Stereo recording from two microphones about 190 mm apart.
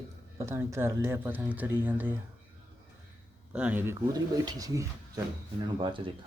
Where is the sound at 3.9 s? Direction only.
20° right (ahead or behind).